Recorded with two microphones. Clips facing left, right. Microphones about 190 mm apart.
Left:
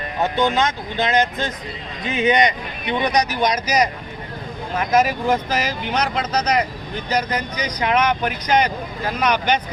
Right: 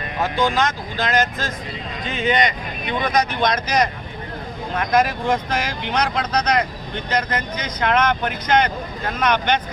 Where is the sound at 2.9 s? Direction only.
20° left (ahead or behind).